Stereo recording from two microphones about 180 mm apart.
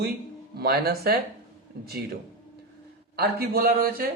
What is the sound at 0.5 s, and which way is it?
A man's voice, 60° right (ahead or behind).